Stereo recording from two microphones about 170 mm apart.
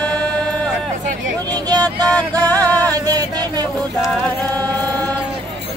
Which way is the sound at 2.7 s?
20° right (ahead or behind).